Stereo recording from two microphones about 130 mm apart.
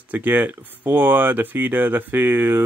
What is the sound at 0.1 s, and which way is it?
Speech, 15° right (ahead or behind).